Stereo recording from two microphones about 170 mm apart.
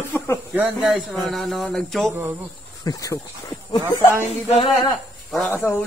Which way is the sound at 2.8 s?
20° left (ahead or behind).